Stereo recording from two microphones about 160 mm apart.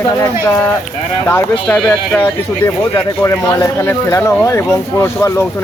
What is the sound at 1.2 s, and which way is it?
Speech, 10° left (ahead or behind).